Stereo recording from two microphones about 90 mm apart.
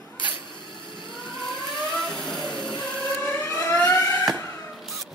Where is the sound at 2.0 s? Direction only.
5° left (ahead or behind).